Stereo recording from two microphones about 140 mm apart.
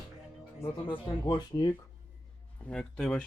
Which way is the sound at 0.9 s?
35° left (ahead or behind).